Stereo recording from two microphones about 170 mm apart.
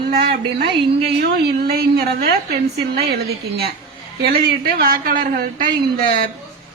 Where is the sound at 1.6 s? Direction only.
70° right (ahead or behind).